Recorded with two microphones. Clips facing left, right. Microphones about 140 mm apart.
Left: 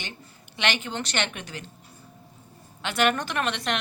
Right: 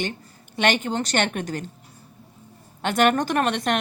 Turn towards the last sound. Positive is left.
turn(degrees=-50)  # may be behind; listen again after turning